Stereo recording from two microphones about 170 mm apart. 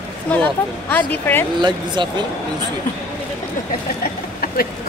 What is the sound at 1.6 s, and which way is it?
Speech, 25° right (ahead or behind).